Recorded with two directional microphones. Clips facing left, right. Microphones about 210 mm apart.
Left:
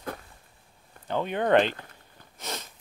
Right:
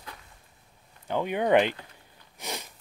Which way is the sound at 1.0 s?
10° right (ahead or behind).